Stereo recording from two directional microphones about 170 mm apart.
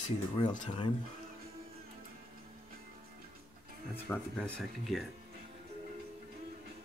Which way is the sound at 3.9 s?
10° left (ahead or behind).